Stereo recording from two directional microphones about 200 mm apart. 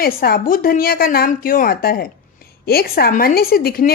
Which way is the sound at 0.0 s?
50° left (ahead or behind).